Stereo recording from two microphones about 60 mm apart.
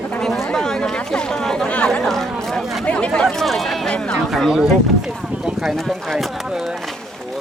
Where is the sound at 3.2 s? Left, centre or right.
Centre.